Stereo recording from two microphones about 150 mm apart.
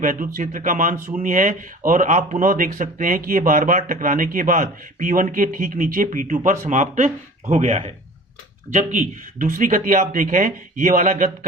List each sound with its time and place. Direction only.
0.0 s speech: 60° right (ahead or behind)
8.7 s speech: 55° right (ahead or behind)